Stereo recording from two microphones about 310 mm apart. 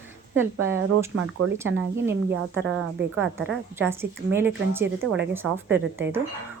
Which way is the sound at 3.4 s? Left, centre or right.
Centre.